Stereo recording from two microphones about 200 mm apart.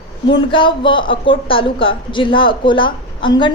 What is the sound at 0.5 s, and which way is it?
A woman's voice, 25° left (ahead or behind).